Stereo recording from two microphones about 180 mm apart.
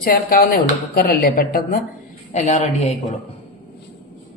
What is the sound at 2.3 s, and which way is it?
Speech, 40° left (ahead or behind).